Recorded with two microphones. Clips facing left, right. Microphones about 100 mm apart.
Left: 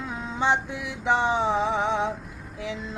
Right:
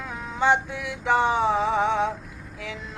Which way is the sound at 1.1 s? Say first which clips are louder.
Right 2 dB; 20° left (ahead or behind).